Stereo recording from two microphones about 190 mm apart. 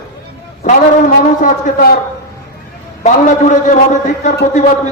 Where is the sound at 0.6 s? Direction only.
45° left (ahead or behind).